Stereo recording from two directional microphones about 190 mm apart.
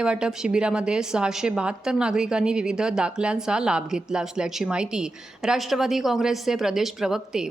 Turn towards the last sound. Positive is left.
turn(degrees=-5)  # may be behind; listen again after turning